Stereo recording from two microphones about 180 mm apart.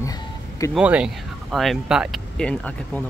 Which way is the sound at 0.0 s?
20° left (ahead or behind).